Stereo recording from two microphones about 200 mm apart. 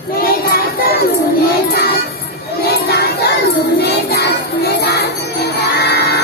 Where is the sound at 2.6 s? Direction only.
55° left (ahead or behind).